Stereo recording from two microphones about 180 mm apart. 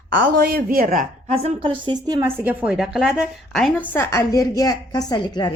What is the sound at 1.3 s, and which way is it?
A woman's voice, 30° right (ahead or behind).